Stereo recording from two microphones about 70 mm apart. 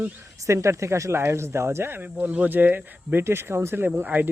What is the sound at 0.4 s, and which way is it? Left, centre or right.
Speech, right.